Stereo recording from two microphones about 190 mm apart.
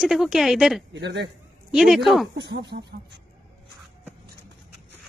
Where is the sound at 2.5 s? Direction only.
60° right (ahead or behind).